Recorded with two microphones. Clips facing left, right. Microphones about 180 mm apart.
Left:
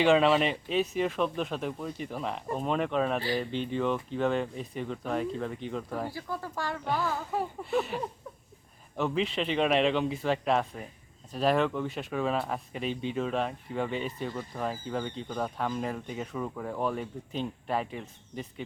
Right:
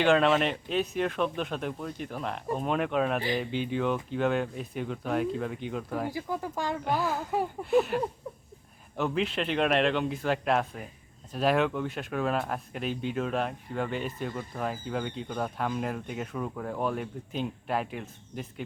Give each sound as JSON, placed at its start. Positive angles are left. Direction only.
{"t": 0.0, "sound": "speech", "side_deg": 0}
{"t": 6.1, "sound": "speech", "side_deg": -15}
{"t": 6.8, "sound": "speech", "side_deg": 0}